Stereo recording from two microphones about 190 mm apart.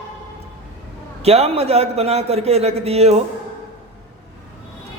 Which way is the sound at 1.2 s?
35° right (ahead or behind).